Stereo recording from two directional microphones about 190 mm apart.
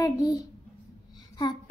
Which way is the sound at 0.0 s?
20° left (ahead or behind).